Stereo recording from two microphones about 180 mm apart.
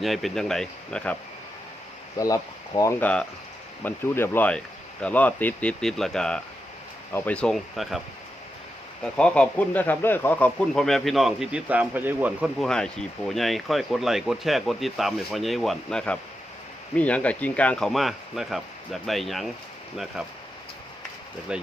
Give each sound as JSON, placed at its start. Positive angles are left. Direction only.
{"t": 0.0, "sound": "speech", "side_deg": 0}
{"t": 2.1, "sound": "speech", "side_deg": 20}
{"t": 9.1, "sound": "speech", "side_deg": 5}
{"t": 12.6, "sound": "speech", "side_deg": 5}
{"t": 21.5, "sound": "speech", "side_deg": -5}